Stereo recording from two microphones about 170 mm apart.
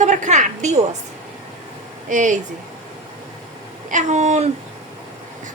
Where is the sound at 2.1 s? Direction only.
45° right (ahead or behind).